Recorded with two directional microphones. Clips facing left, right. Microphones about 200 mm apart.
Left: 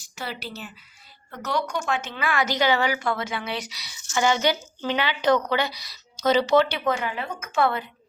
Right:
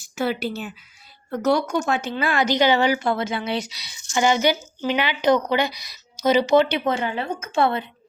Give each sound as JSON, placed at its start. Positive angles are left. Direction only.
{"t": 0.2, "sound": "speech", "side_deg": -50}
{"t": 1.3, "sound": "a woman's voice", "side_deg": -40}
{"t": 4.1, "sound": "speech", "side_deg": -15}